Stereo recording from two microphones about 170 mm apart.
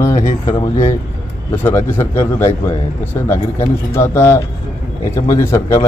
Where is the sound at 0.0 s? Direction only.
15° left (ahead or behind).